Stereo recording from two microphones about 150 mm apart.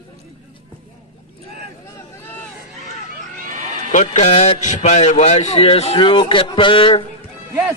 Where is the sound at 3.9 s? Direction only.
50° left (ahead or behind); by 7.0 s 35° left (ahead or behind).